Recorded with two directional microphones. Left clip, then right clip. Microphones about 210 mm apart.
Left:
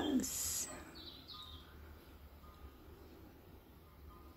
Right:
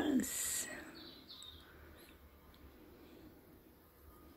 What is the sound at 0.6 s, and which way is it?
Bird, 15° right (ahead or behind).